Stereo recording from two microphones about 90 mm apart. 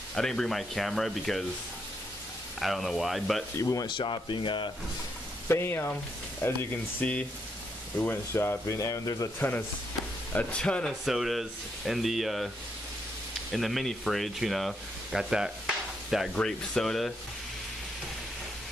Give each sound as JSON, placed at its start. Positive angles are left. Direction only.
{"t": 0.1, "sound": "speech", "side_deg": 5}
{"t": 2.6, "sound": "speech", "side_deg": 0}
{"t": 3.5, "sound": "speech", "side_deg": 40}
{"t": 3.8, "sound": "speech", "side_deg": 65}
{"t": 5.5, "sound": "speech", "side_deg": 25}
{"t": 10.3, "sound": "speech", "side_deg": 10}
{"t": 11.1, "sound": "speech", "side_deg": 0}
{"t": 13.5, "sound": "speech", "side_deg": 0}
{"t": 16.3, "sound": "speech", "side_deg": 5}